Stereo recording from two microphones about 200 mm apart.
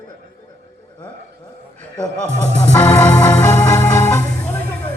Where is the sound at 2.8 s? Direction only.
10° left (ahead or behind).